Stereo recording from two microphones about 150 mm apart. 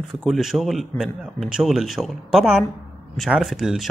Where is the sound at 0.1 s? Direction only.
Centre (ahead or behind).